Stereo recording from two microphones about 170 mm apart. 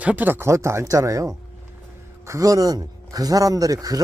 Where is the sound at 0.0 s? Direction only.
10° right (ahead or behind).